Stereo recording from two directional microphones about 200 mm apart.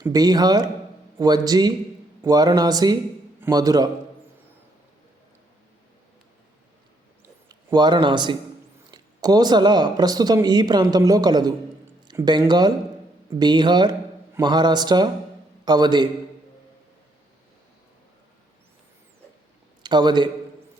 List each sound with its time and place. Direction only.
0.0 s a man's voice: 20° right (ahead or behind)
7.4 s a man's voice: 20° right (ahead or behind)
19.8 s a man's voice: 20° right (ahead or behind)